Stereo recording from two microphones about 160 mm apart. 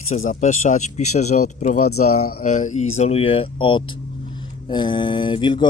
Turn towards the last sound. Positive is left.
turn(degrees=30)  # may be behind; listen again after turning